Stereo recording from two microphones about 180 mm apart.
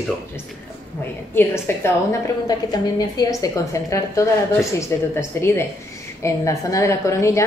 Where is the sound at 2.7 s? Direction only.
20° left (ahead or behind).